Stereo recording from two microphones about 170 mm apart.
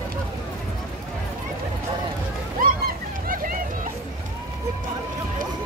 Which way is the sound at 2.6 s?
55° right (ahead or behind).